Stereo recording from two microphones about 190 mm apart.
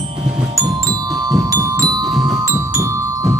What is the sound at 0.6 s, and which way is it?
Marimba, 20° right (ahead or behind).